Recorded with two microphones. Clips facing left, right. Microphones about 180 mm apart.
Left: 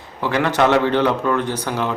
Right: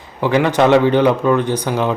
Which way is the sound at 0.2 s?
15° right (ahead or behind).